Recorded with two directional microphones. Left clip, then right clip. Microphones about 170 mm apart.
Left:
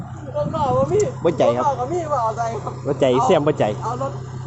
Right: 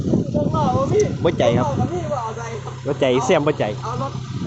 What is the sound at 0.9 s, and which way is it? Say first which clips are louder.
Speech: even; centre (ahead or behind).